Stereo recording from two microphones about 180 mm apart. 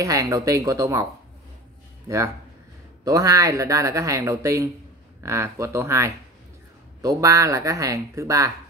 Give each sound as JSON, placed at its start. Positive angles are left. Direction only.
{"t": 0.0, "sound": "speech", "side_deg": -20}
{"t": 2.0, "sound": "speech", "side_deg": -15}